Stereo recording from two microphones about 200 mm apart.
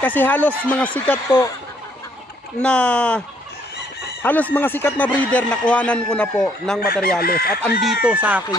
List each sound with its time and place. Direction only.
0.0 s speech: 10° left (ahead or behind)
2.6 s speech: 5° left (ahead or behind)
4.2 s speech: 10° left (ahead or behind)
6.8 s chicken: 50° left (ahead or behind)
7.8 s speech: 5° right (ahead or behind)